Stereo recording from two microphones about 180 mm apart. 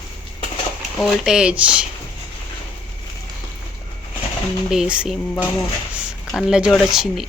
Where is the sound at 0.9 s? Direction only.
Centre (ahead or behind).